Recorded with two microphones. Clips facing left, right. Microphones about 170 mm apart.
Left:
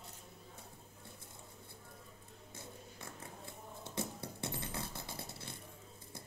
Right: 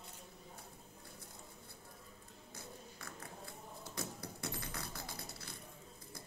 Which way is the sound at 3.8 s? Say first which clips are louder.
Left 4 dB; 25° left (ahead or behind).